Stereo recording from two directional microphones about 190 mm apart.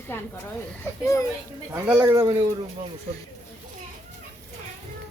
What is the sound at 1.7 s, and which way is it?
Speech, 10° right (ahead or behind).